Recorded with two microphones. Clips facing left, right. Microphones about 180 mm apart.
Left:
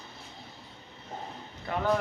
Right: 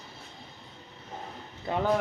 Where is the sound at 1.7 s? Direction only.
25° right (ahead or behind).